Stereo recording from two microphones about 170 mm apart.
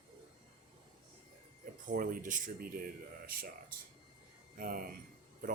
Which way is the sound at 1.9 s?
55° right (ahead or behind).